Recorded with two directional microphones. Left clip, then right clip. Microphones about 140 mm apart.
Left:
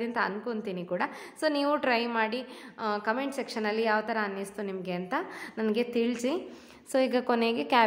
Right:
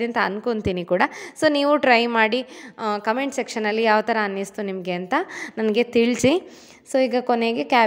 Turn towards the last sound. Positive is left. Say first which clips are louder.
# right 6 dB
turn(degrees=-40)  # may be behind; listen again after turning